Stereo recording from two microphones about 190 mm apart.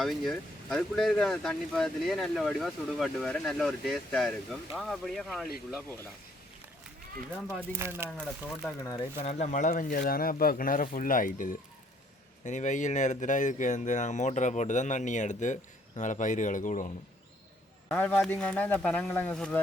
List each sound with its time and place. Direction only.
0.0 s speech: 5° left (ahead or behind)
7.6 s speech: 10° right (ahead or behind)
8.8 s a man's voice: 15° left (ahead or behind)
9.1 s speech: 35° left (ahead or behind)
17.8 s a man's voice: 10° left (ahead or behind)